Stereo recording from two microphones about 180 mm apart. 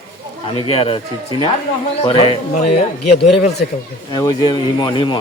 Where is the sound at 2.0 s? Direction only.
30° left (ahead or behind).